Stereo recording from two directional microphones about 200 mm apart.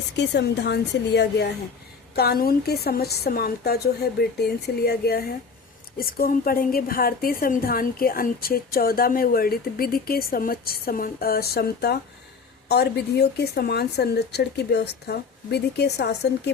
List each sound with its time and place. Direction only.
0.2 s a woman's voice: 55° left (ahead or behind)